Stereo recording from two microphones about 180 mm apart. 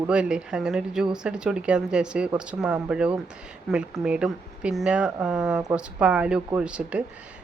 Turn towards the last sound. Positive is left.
turn(degrees=-5)  # may be behind; listen again after turning